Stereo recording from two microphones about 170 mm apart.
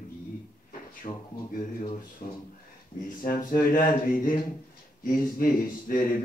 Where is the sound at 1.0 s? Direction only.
35° left (ahead or behind).